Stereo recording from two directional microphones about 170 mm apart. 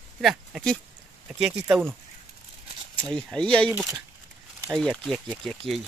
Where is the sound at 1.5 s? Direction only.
10° right (ahead or behind).